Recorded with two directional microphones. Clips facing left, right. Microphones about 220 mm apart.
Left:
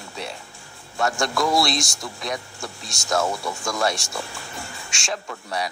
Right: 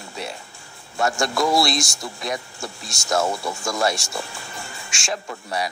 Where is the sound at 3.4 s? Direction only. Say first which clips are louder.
Right 1 dB; 25° right (ahead or behind).